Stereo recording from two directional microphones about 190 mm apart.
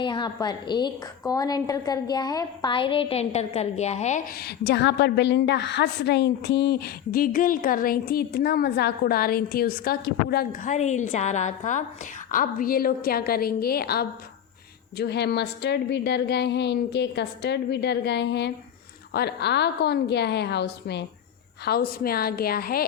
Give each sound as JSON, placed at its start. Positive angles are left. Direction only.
{"t": 0.0, "sound": "a woman's voice", "side_deg": 25}
{"t": 4.4, "sound": "a woman's voice", "side_deg": 60}